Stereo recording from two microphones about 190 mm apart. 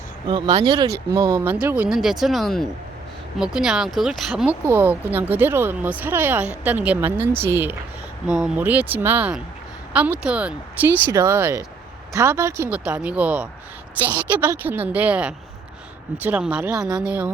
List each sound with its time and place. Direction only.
0.3 s speech: 25° right (ahead or behind)
1.5 s speech: 10° right (ahead or behind)